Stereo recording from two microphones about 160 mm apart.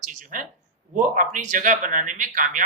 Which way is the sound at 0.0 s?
50° right (ahead or behind).